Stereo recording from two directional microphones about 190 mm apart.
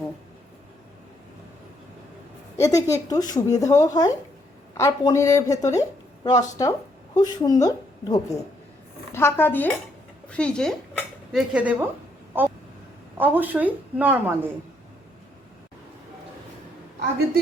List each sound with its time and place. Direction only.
2.6 s a woman's voice: 15° left (ahead or behind); by 14.5 s 10° right (ahead or behind)